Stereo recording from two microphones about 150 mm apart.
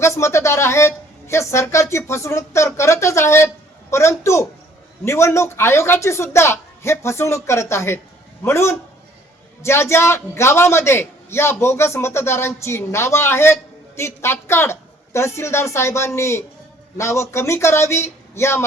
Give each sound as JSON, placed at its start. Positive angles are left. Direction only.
{"t": 0.0, "sound": "a woman's voice", "side_deg": 20}